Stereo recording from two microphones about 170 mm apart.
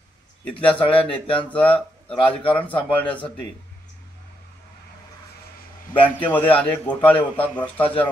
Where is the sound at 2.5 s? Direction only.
10° left (ahead or behind).